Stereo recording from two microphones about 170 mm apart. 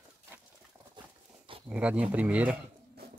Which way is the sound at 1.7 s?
5° right (ahead or behind).